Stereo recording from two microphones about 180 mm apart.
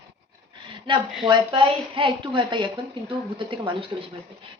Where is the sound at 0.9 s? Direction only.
25° right (ahead or behind).